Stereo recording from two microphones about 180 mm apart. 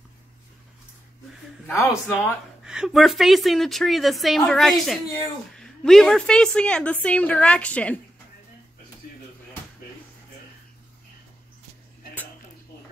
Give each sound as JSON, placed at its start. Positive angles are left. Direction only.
{"t": 1.7, "sound": "a woman's voice", "side_deg": 15}
{"t": 2.6, "sound": "a woman's voice", "side_deg": -5}